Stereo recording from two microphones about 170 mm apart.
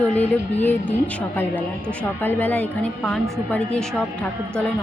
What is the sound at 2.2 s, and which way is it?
A woman's voice, 10° left (ahead or behind).